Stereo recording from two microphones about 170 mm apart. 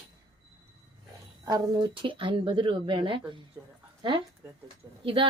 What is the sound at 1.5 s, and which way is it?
A woman's voice, 30° right (ahead or behind).